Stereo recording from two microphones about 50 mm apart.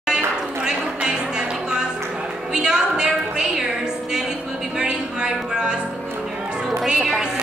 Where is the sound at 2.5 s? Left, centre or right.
Centre.